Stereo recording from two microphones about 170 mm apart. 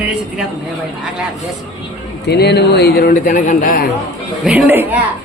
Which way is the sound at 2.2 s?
70° left (ahead or behind).